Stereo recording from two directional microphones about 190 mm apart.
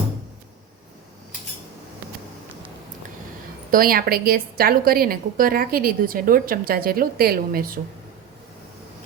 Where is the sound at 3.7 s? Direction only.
50° right (ahead or behind).